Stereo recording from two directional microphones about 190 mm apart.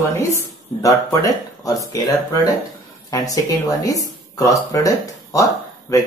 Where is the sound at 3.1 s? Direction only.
20° left (ahead or behind).